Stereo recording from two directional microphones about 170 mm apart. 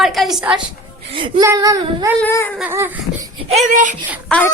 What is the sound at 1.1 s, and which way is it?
Speech, 30° right (ahead or behind).